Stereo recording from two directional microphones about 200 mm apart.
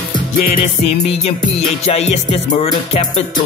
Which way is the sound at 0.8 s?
30° left (ahead or behind).